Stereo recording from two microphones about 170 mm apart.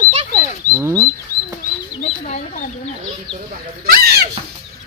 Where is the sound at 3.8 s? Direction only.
65° right (ahead or behind).